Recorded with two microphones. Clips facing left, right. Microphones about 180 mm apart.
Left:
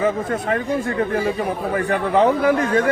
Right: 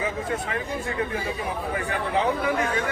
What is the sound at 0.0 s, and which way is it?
Speech, 50° left (ahead or behind).